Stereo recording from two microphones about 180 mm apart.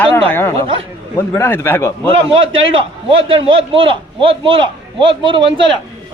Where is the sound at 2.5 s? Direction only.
30° right (ahead or behind).